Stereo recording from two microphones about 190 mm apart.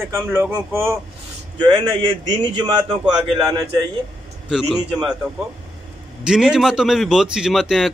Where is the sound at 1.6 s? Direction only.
25° right (ahead or behind).